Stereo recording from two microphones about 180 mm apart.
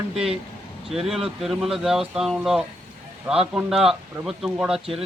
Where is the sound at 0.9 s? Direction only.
Centre (ahead or behind).